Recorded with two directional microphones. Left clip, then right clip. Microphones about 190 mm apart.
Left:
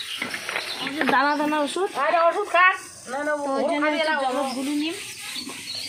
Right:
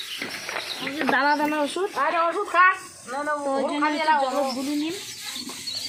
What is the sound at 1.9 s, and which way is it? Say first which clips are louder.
Speech: left 3 dB; 50° right (ahead or behind).